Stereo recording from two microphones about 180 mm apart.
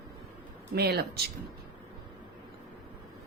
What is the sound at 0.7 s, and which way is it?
Speech, 65° right (ahead or behind).